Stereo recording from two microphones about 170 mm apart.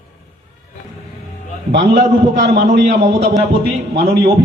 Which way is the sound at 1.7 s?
85° right.